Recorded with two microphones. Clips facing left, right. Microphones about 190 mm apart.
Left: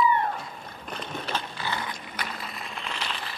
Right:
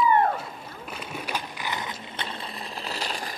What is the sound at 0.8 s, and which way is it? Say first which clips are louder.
Ratchet: left 1 dB; 5° right (ahead or behind).